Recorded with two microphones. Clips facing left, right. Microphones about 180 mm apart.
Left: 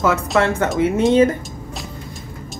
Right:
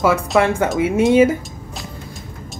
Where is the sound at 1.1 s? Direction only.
10° right (ahead or behind).